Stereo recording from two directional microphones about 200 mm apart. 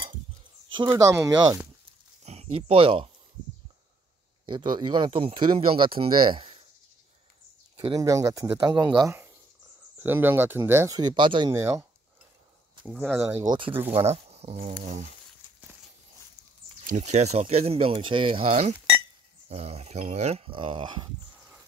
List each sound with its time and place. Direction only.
0.7 s speech: 20° right (ahead or behind)
2.2 s speech: 30° right (ahead or behind)
4.5 s speech: 20° right (ahead or behind)
7.7 s speech: 25° right (ahead or behind)
12.8 s speech: 5° right (ahead or behind)
13.9 s speech: 30° right (ahead or behind)
16.8 s speech: 35° right (ahead or behind)